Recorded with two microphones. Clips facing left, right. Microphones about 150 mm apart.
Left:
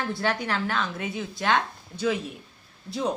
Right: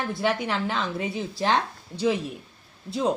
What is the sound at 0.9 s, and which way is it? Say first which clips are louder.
Speech: right 3 dB; 30° right (ahead or behind).